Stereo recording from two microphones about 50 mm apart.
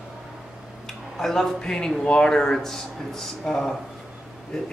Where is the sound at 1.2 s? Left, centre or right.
Centre.